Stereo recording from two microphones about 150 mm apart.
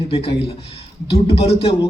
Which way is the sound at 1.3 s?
40° left (ahead or behind).